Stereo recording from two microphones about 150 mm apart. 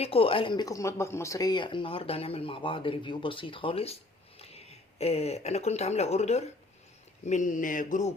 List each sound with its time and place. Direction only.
0.0 s speech: 40° left (ahead or behind)
7.3 s mantra: 60° left (ahead or behind)